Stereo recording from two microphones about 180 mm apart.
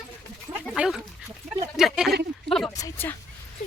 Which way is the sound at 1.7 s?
Centre (ahead or behind).